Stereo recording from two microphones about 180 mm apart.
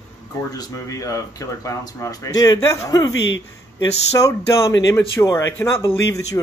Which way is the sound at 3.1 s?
90° left.